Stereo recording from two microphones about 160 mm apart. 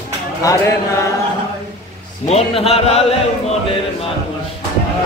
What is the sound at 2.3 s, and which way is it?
Speech, 40° left (ahead or behind).